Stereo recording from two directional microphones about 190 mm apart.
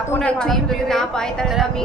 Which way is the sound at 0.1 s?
5° left (ahead or behind).